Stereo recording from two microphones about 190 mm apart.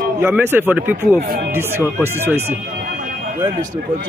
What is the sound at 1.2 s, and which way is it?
Speech, 50° right (ahead or behind).